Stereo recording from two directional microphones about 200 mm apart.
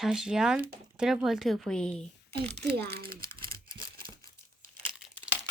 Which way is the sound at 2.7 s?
55° right (ahead or behind).